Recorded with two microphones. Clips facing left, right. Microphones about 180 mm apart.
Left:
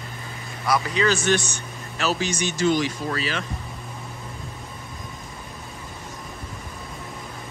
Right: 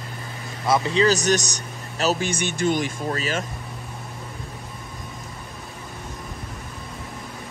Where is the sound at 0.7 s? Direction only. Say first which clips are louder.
Right 3 dB; 30° right (ahead or behind); by 3.4 s 45° right (ahead or behind).